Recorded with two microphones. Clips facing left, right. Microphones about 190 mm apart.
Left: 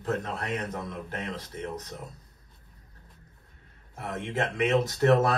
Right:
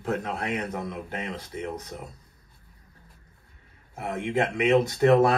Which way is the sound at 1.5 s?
5° right (ahead or behind).